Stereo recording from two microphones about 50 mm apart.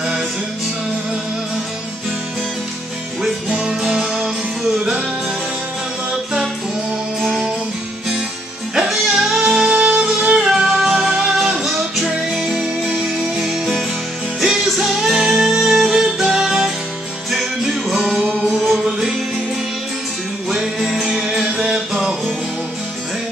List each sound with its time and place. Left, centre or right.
3.4 s music: right
7.2 s music: centre
8.7 s music: centre
9.7 s music: centre
10.5 s music: centre
20.4 s music: centre
21.1 s music: centre
21.5 s music: centre